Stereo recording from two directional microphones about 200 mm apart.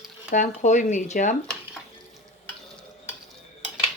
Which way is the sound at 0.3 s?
40° left (ahead or behind).